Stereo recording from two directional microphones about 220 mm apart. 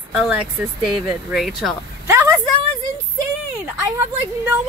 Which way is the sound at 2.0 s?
10° right (ahead or behind).